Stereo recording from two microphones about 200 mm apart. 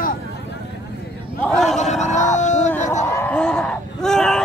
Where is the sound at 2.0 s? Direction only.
35° left (ahead or behind).